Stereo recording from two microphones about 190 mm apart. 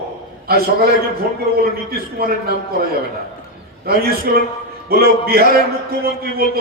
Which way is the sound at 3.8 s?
55° right (ahead or behind).